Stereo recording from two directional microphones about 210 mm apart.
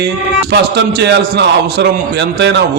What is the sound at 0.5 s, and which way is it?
A man's voice, 55° right (ahead or behind).